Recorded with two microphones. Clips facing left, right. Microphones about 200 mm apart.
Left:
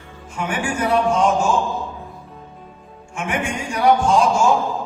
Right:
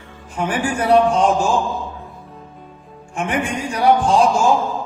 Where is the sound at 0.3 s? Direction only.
35° right (ahead or behind).